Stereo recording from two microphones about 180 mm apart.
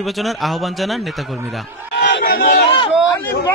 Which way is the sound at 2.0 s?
75° left (ahead or behind).